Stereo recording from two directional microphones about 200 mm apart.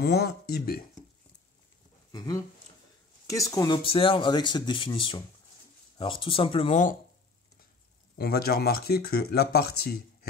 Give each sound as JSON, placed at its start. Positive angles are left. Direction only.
{"t": 0.0, "sound": "speech", "side_deg": 50}
{"t": 2.1, "sound": "speech", "side_deg": 20}
{"t": 8.2, "sound": "speech", "side_deg": 50}